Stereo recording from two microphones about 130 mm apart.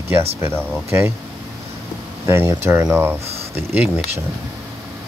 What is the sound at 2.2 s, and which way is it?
Speech, 20° right (ahead or behind).